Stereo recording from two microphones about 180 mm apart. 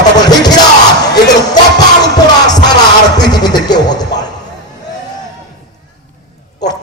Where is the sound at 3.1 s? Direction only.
25° left (ahead or behind).